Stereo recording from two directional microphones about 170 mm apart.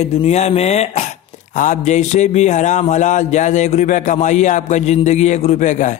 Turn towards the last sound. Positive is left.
turn(degrees=45)  # may be behind; listen again after turning